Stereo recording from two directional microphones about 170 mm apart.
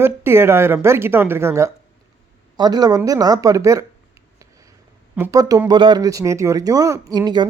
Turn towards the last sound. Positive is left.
turn(degrees=-25)  # may be behind; listen again after turning